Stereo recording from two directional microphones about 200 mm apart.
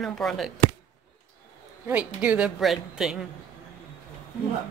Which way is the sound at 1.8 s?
5° right (ahead or behind).